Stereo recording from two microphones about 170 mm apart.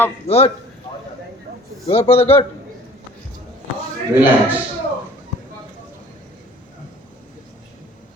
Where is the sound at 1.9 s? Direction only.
35° left (ahead or behind).